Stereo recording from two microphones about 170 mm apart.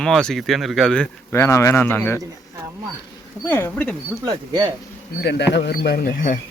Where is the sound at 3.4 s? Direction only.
10° left (ahead or behind).